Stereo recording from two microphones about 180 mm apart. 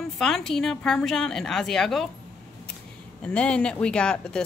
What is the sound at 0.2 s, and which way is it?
A woman's voice, 5° left (ahead or behind).